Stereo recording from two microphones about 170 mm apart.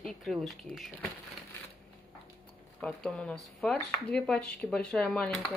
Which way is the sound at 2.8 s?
5° left (ahead or behind).